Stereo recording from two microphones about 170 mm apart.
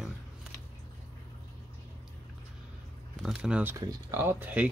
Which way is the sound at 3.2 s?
5° right (ahead or behind).